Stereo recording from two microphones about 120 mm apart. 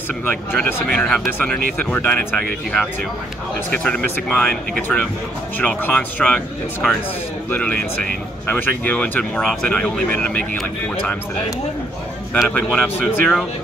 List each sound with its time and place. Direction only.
0.3 s speech: 15° left (ahead or behind)
0.8 s speech: 5° left (ahead or behind)
12.5 s speech: 15° left (ahead or behind)
13.0 s speech: 5° right (ahead or behind)